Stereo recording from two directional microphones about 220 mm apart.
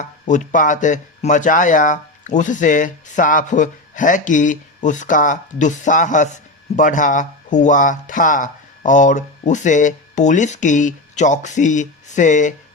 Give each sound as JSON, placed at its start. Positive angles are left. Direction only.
{"t": 0.0, "sound": "speech", "side_deg": 35}